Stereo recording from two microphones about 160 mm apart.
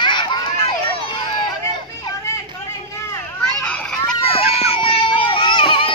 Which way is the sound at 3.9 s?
35° left (ahead or behind).